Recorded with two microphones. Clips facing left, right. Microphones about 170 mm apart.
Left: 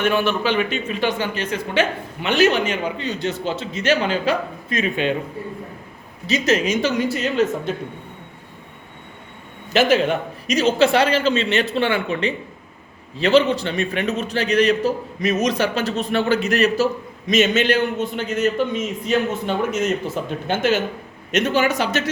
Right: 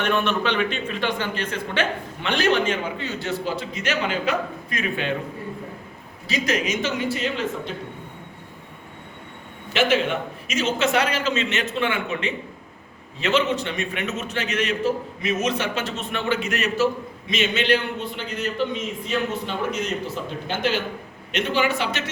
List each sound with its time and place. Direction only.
0.0 s a man's voice: 5° left (ahead or behind); by 5.1 s 20° left (ahead or behind)
6.2 s a man's voice: 25° left (ahead or behind); by 7.7 s 40° left (ahead or behind)
9.7 s a man's voice: 40° left (ahead or behind)